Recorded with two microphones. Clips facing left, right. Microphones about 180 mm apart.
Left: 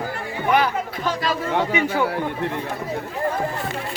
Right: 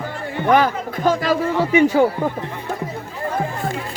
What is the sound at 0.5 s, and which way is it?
Speech, 45° right (ahead or behind).